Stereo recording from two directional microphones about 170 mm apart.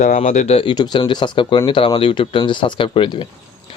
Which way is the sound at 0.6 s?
25° left (ahead or behind).